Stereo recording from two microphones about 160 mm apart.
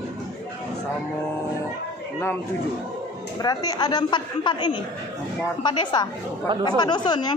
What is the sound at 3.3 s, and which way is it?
Speech, 25° left (ahead or behind).